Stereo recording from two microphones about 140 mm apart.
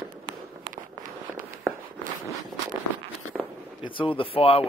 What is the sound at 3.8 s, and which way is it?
Speech, 35° left (ahead or behind).